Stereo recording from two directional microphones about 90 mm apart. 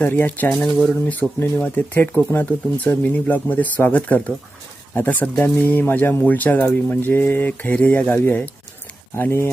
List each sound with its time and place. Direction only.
0.0 s speech: 20° left (ahead or behind)